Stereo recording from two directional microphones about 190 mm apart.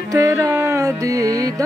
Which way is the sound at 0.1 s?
15° right (ahead or behind).